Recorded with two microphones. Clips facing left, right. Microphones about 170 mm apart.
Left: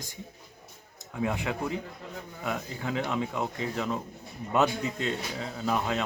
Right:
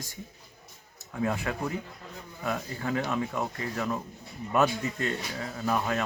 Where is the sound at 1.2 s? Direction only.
15° left (ahead or behind).